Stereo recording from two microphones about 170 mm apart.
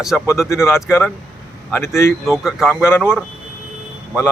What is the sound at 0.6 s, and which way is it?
Speech, 15° left (ahead or behind).